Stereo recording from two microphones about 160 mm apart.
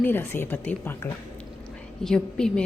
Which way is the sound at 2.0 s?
5° left (ahead or behind).